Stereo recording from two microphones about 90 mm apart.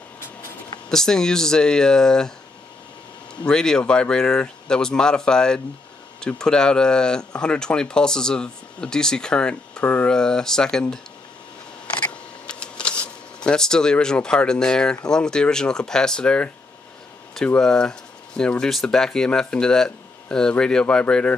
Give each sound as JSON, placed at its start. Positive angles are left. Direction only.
{"t": 0.8, "sound": "speech", "side_deg": 5}
{"t": 3.4, "sound": "speech", "side_deg": 5}
{"t": 12.0, "sound": "speech", "side_deg": 10}
{"t": 17.6, "sound": "speech", "side_deg": 10}